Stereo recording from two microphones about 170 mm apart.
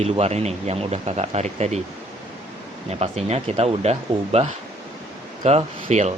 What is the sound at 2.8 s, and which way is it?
Speech, 35° right (ahead or behind).